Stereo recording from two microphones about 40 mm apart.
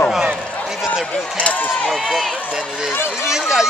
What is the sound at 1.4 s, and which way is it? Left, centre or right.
Speech, left.